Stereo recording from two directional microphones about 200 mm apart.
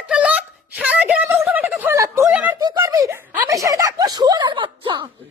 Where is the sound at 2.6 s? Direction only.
20° right (ahead or behind).